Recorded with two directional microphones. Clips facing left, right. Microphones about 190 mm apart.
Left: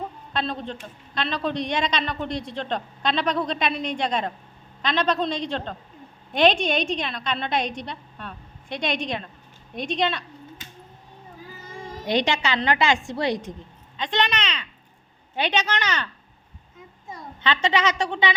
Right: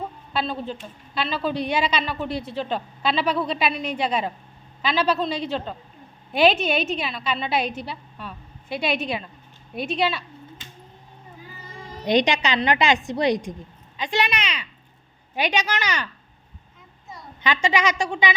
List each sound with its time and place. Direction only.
0.3 s a woman's voice: 5° right (ahead or behind)
12.0 s a woman's voice: 20° right (ahead or behind)
17.4 s a woman's voice: 10° right (ahead or behind)